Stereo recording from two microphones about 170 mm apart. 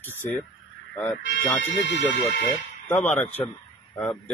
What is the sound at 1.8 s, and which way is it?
Speech, 90° left.